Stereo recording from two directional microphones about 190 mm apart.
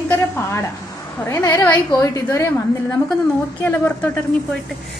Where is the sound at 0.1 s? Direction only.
15° left (ahead or behind).